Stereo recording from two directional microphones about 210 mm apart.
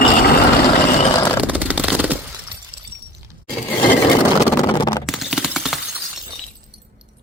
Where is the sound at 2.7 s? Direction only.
25° right (ahead or behind).